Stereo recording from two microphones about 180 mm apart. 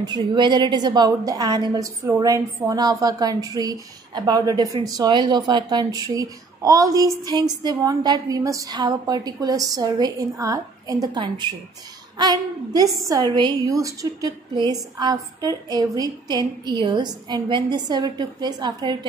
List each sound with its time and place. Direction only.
0.0 s a woman's voice: 25° right (ahead or behind)